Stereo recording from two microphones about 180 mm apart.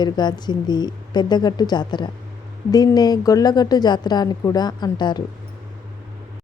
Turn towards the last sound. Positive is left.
turn(degrees=25)  # may be behind; listen again after turning